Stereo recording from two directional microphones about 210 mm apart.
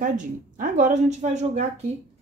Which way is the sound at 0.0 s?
40° right (ahead or behind).